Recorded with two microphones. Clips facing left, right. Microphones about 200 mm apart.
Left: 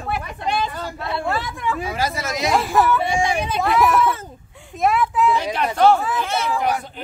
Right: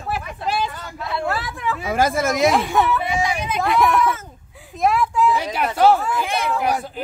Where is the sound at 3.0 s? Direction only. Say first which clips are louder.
Left 2 dB; 30° left (ahead or behind).